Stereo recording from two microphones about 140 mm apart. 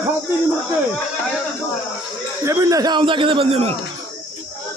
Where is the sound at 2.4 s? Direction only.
25° right (ahead or behind); by 3.8 s 45° right (ahead or behind).